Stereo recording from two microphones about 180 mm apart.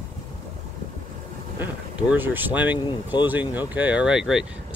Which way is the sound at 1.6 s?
10° right (ahead or behind).